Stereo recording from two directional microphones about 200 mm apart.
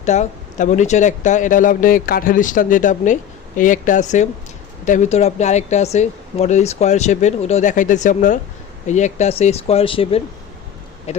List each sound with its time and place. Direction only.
0.0 s speech: 35° left (ahead or behind)